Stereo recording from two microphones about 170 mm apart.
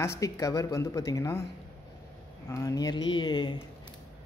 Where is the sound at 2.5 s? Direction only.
20° left (ahead or behind).